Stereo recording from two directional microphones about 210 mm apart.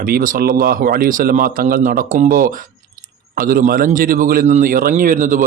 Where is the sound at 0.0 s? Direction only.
40° right (ahead or behind).